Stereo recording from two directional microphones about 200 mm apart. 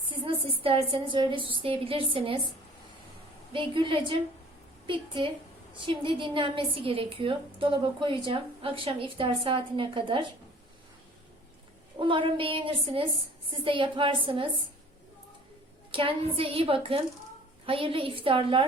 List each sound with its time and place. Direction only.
0.1 s a woman's voice: 25° right (ahead or behind)
3.5 s a woman's voice: 25° right (ahead or behind)
11.9 s a woman's voice: 25° right (ahead or behind)
15.9 s a woman's voice: 25° right (ahead or behind)